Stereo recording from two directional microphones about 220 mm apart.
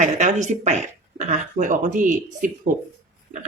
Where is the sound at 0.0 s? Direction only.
35° right (ahead or behind).